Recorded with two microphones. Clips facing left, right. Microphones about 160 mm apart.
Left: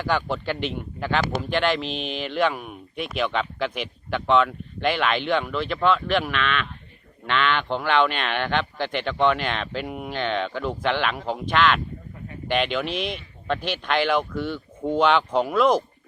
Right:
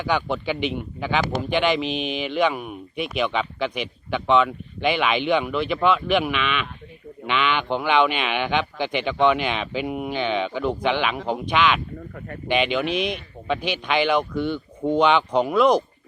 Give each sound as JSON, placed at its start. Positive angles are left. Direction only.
{"t": 0.0, "sound": "speech", "side_deg": 0}